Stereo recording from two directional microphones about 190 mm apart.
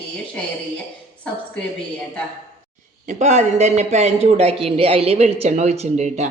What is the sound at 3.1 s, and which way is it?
Speech, 35° right (ahead or behind).